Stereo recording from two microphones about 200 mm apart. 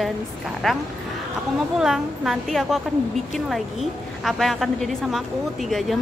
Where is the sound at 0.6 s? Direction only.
Centre (ahead or behind).